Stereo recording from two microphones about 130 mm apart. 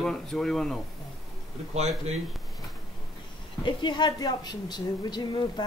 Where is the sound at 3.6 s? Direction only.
35° left (ahead or behind).